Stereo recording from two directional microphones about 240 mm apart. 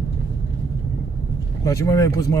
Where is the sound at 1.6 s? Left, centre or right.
Centre.